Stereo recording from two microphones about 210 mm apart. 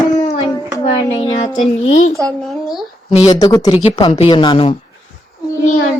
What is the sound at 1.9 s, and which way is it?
Speech, 35° left (ahead or behind).